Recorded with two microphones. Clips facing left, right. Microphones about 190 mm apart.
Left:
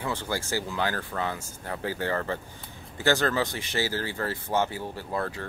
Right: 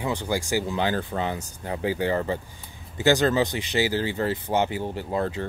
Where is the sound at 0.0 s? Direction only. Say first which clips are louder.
Right 4 dB; 15° right (ahead or behind).